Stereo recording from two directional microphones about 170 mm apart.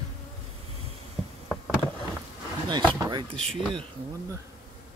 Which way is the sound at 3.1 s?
30° right (ahead or behind).